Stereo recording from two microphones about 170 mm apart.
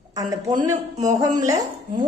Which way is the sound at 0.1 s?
20° right (ahead or behind).